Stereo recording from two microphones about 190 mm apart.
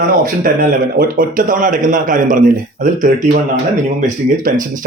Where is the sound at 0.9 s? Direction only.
50° right (ahead or behind).